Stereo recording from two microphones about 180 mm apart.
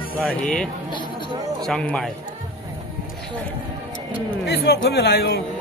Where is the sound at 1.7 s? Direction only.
5° left (ahead or behind).